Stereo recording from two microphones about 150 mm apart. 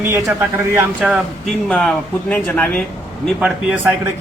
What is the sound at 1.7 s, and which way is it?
Speech, 5° left (ahead or behind).